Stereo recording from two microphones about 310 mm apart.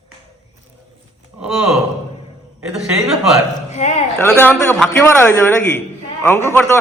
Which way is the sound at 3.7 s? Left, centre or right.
Left.